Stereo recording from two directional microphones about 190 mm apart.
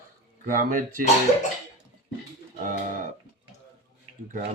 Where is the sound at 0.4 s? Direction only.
45° right (ahead or behind).